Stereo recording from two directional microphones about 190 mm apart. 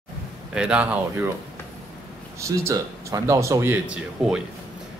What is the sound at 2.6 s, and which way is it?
Speech, 15° right (ahead or behind).